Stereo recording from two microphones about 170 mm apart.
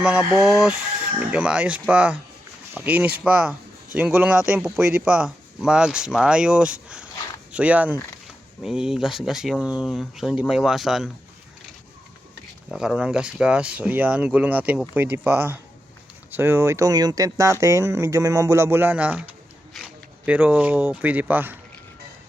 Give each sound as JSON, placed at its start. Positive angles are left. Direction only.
{"t": 0.0, "sound": "speech", "side_deg": -5}
{"t": 12.7, "sound": "speech", "side_deg": -5}